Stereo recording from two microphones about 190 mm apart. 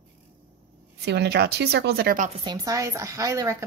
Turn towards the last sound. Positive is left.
turn(degrees=-15)  # may be behind; listen again after turning